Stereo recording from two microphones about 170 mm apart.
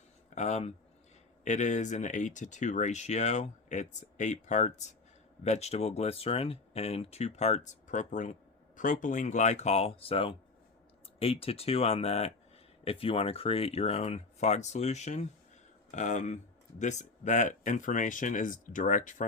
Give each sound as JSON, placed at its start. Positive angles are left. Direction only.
{"t": 0.3, "sound": "speech", "side_deg": 40}